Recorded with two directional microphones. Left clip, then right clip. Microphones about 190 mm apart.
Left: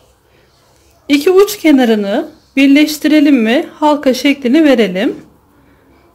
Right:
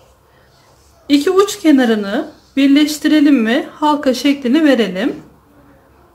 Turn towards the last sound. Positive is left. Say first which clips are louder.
# left 3 dB
turn(degrees=30)  # may be behind; listen again after turning